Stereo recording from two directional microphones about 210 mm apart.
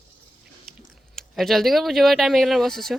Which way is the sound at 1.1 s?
Centre (ahead or behind).